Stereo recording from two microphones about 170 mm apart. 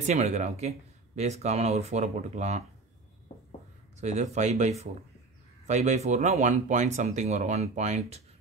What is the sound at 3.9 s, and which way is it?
Speech, 40° right (ahead or behind).